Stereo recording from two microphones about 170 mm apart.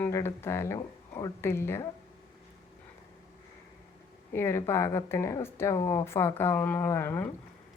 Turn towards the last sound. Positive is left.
turn(degrees=15)  # may be behind; listen again after turning